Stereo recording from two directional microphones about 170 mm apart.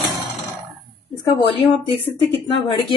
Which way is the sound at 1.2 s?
30° left (ahead or behind).